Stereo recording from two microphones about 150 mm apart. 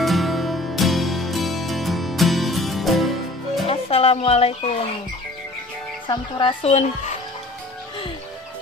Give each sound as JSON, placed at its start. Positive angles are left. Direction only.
{"t": 0.0, "sound": "music", "side_deg": 0}
{"t": 3.6, "sound": "music", "side_deg": 40}
{"t": 6.0, "sound": "speech", "side_deg": 35}